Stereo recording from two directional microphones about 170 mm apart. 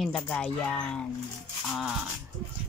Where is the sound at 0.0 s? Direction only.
5° left (ahead or behind).